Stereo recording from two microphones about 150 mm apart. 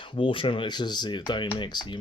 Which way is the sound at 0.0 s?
35° left (ahead or behind).